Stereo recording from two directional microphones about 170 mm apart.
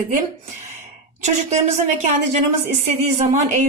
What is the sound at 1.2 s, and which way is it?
Speech, 45° right (ahead or behind).